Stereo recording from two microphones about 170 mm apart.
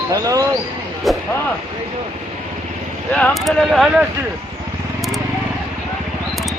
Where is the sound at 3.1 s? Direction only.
5° left (ahead or behind).